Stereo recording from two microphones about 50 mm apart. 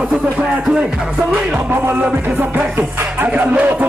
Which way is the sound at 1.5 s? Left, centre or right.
Right.